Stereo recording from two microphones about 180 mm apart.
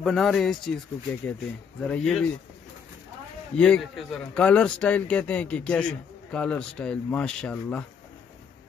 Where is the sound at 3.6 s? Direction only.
5° left (ahead or behind).